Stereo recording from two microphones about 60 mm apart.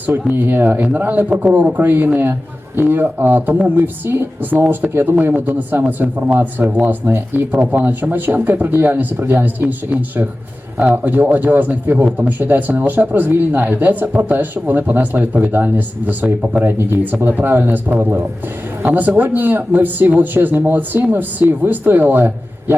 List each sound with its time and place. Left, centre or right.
0.1 s speech: right
5.1 s speech: right
6.8 s speech: right
7.5 s speech: right
18.9 s speech: right